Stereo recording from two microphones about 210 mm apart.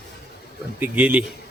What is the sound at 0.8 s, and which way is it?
Speech, 5° right (ahead or behind).